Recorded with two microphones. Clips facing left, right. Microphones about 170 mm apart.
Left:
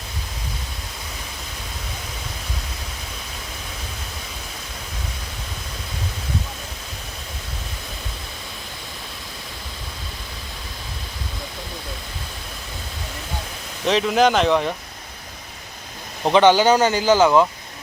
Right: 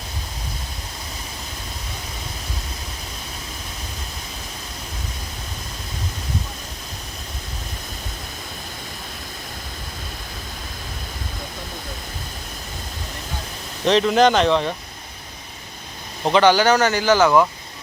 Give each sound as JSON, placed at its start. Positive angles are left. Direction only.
{"t": 13.8, "sound": "speech", "side_deg": 5}
{"t": 16.2, "sound": "speech", "side_deg": 20}